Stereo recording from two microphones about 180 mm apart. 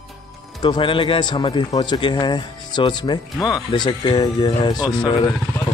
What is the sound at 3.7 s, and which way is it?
Speech, 25° left (ahead or behind).